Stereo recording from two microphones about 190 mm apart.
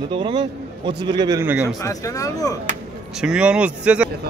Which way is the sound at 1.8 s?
15° left (ahead or behind).